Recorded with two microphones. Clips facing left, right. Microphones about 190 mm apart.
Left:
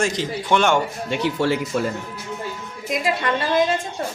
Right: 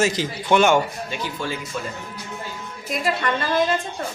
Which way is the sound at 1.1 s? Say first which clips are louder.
Left 8 dB; 70° left (ahead or behind).